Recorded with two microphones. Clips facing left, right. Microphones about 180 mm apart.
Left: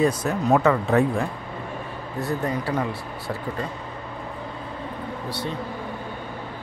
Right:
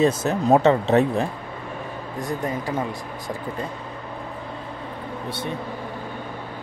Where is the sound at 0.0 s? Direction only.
25° right (ahead or behind).